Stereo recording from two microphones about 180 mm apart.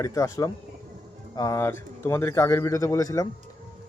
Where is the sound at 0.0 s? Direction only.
20° left (ahead or behind).